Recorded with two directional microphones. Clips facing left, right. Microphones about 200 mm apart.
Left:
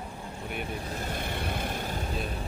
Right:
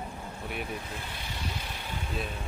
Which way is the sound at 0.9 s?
45° left (ahead or behind).